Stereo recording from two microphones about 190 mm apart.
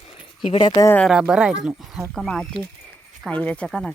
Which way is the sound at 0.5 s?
25° left (ahead or behind).